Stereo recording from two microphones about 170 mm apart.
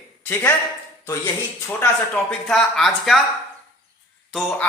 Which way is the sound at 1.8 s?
5° left (ahead or behind).